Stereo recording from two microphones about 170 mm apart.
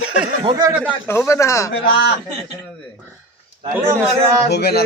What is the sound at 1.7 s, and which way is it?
Speech, 90° left.